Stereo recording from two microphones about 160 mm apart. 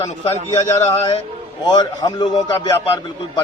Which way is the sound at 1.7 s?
25° left (ahead or behind).